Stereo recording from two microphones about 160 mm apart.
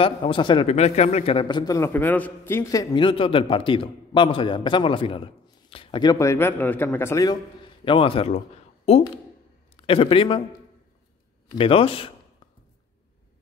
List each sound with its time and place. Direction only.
0.0 s a man's voice: 35° left (ahead or behind); by 7.3 s 20° left (ahead or behind)
7.8 s a man's voice: 30° left (ahead or behind)
9.8 s a man's voice: 35° left (ahead or behind)
11.5 s a man's voice: 35° left (ahead or behind)